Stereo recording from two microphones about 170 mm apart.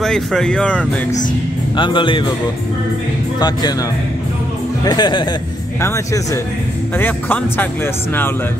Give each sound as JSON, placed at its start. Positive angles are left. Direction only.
{"t": 0.0, "sound": "speech", "side_deg": 5}
{"t": 1.8, "sound": "speech", "side_deg": 30}
{"t": 3.3, "sound": "speech", "side_deg": 25}
{"t": 4.8, "sound": "speech", "side_deg": 25}
{"t": 5.8, "sound": "speech", "side_deg": 15}